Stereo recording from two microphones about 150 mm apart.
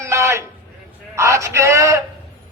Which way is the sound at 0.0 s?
20° right (ahead or behind).